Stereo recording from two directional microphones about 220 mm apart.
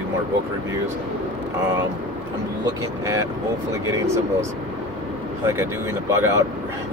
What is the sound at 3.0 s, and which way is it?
Speech, 15° right (ahead or behind).